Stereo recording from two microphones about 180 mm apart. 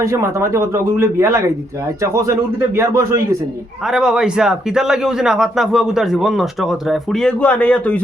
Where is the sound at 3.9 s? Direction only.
5° right (ahead or behind).